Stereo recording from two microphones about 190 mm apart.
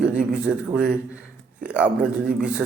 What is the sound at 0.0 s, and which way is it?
A man's voice, 5° right (ahead or behind).